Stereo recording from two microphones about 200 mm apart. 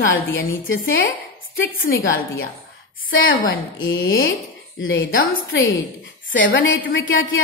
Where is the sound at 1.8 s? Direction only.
45° left (ahead or behind).